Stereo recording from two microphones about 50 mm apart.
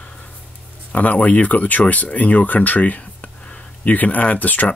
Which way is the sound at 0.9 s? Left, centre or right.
Left.